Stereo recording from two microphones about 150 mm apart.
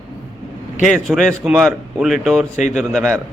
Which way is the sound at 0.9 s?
Centre (ahead or behind).